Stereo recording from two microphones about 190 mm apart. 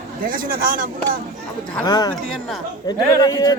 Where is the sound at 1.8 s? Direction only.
20° left (ahead or behind).